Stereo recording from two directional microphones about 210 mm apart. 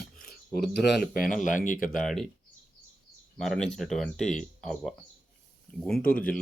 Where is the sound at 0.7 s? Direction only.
50° left (ahead or behind).